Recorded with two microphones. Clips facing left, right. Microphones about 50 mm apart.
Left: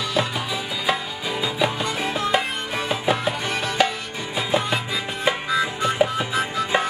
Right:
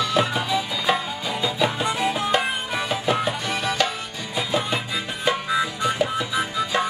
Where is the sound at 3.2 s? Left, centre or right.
Centre.